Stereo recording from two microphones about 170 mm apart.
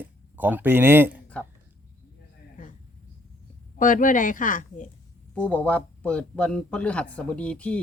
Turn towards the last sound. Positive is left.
turn(degrees=5)  # may be behind; listen again after turning